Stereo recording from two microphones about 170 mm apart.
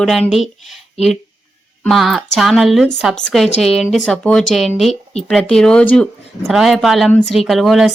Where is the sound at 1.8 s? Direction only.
Centre (ahead or behind).